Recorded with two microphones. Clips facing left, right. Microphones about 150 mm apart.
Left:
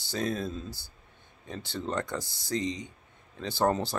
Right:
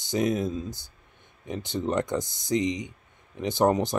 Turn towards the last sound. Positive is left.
turn(degrees=-20)  # may be behind; listen again after turning